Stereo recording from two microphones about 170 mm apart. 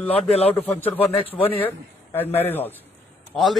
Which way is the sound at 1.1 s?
35° left (ahead or behind).